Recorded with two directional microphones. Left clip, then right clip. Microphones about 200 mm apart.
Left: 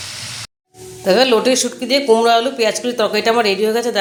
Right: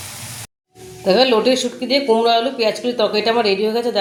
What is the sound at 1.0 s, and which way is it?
Speech, centre (ahead or behind).